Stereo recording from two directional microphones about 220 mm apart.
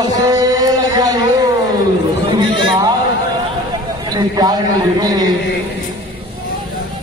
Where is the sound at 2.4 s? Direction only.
55° left (ahead or behind).